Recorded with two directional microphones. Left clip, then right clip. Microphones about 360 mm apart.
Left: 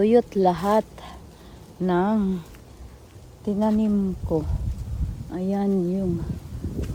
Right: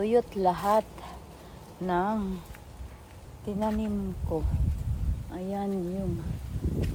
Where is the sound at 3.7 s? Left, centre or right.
Left.